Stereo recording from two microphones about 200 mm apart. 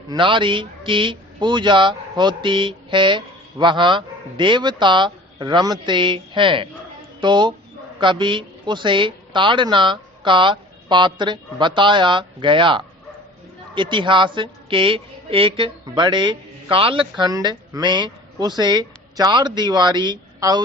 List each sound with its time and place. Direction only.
0.1 s a man's voice: 25° right (ahead or behind)